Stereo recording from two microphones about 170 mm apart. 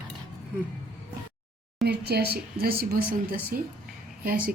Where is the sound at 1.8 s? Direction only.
75° right (ahead or behind).